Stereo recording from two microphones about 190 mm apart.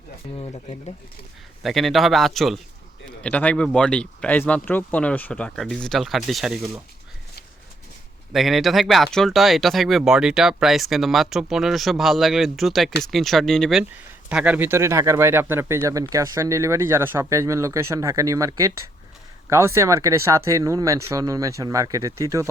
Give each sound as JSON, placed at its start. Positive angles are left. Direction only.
{"t": 0.3, "sound": "speech", "side_deg": 35}
{"t": 1.6, "sound": "speech", "side_deg": 0}
{"t": 8.3, "sound": "speech", "side_deg": 0}